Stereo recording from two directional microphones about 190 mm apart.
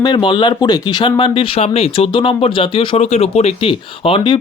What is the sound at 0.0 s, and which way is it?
Speech, 25° left (ahead or behind).